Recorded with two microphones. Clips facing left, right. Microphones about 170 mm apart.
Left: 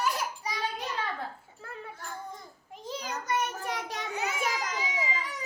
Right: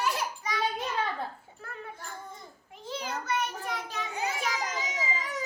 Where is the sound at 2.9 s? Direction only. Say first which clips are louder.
Even; 40° left (ahead or behind).